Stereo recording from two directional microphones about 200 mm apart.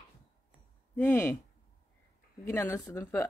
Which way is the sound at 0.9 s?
10° left (ahead or behind).